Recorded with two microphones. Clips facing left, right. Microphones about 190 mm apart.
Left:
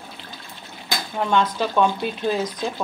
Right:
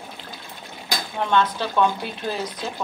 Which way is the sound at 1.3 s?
15° left (ahead or behind).